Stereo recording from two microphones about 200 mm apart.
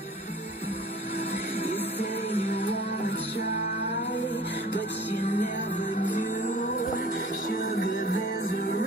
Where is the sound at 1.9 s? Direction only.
30° left (ahead or behind).